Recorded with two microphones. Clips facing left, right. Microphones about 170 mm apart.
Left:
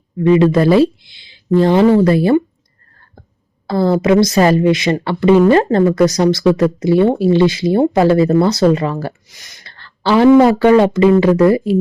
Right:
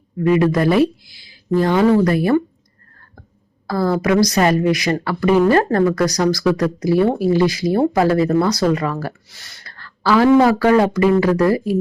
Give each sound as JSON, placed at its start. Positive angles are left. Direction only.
{"t": 0.2, "sound": "a woman's voice", "side_deg": 25}
{"t": 3.7, "sound": "a woman's voice", "side_deg": 25}